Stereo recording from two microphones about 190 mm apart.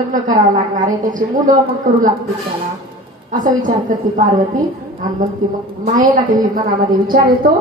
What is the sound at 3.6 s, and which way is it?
Speech, 45° right (ahead or behind).